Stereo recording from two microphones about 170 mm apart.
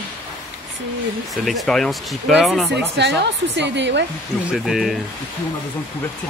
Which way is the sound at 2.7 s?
90° right.